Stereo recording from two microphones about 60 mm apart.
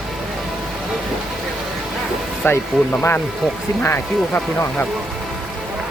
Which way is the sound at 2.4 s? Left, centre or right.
Left.